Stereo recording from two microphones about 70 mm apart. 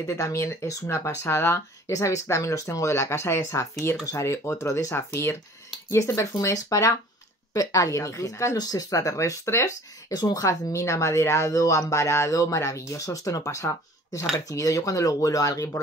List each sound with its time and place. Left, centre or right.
0.0 s speech: left
4.9 s speech: left
6.4 s speech: left
8.5 s speech: left
10.1 s speech: left
10.4 s speech: left